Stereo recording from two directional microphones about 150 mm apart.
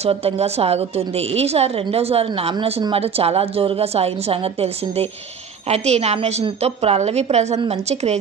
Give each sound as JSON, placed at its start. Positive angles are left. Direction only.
{"t": 0.0, "sound": "a woman's voice", "side_deg": -45}